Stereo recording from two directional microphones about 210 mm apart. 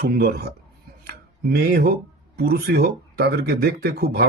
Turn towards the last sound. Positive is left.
turn(degrees=-45)  # may be behind; listen again after turning